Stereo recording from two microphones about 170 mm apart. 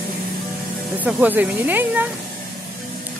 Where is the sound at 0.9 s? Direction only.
10° right (ahead or behind).